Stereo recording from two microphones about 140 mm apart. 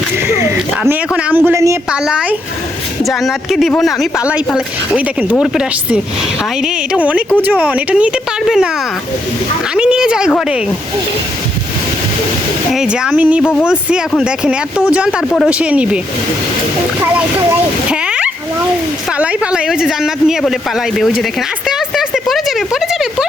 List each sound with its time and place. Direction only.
0.8 s speech: 10° right (ahead or behind)
1.9 s speech: 5° right (ahead or behind)
9.7 s speech: 5° right (ahead or behind)
12.7 s speech: 5° right (ahead or behind)
13.4 s speech: 15° left (ahead or behind)
13.7 s speech: 5° right (ahead or behind)
17.5 s speech: 10° right (ahead or behind)
21.7 s a sound: centre (ahead or behind)